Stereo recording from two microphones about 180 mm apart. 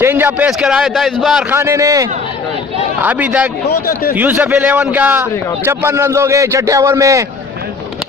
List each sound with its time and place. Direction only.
0.0 s a man's voice: 10° right (ahead or behind)
1.5 s a man's voice: 15° right (ahead or behind)
3.7 s speech: 60° left (ahead or behind)
4.1 s a man's voice: 10° right (ahead or behind)